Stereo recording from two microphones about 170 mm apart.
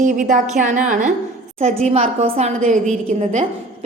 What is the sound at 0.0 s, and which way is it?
A woman's voice, 50° right (ahead or behind).